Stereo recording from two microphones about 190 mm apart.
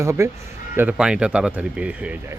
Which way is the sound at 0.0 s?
15° right (ahead or behind).